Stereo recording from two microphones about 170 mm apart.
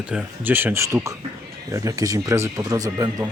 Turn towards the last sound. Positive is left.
turn(degrees=-20)  # may be behind; listen again after turning